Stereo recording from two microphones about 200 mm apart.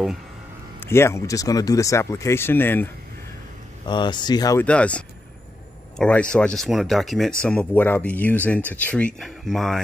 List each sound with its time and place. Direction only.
0.7 s speech: 10° left (ahead or behind)
3.8 s speech: 20° left (ahead or behind)
4.6 s speech: 5° left (ahead or behind)